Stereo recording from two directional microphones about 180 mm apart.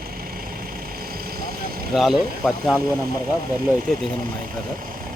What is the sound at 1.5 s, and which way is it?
Vehicle, 55° right (ahead or behind).